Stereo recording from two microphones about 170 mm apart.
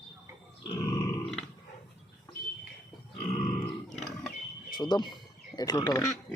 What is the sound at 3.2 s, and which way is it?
Grunt, 40° left (ahead or behind).